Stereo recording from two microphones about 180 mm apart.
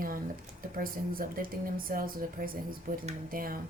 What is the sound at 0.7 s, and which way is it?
A woman's voice, 50° right (ahead or behind).